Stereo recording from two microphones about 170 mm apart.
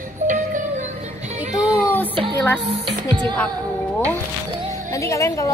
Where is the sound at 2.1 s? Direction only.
30° right (ahead or behind).